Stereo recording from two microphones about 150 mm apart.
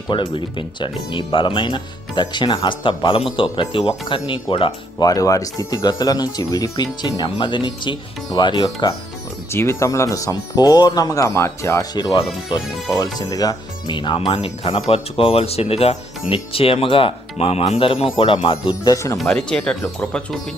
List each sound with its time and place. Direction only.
0.1 s speech: 35° left (ahead or behind)
9.5 s speech: 15° left (ahead or behind); by 18.5 s 35° left (ahead or behind)
18.7 s speech: 25° left (ahead or behind)
19.1 s speech: 5° left (ahead or behind)